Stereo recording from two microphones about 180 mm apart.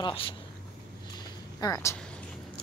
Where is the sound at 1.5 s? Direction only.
20° left (ahead or behind).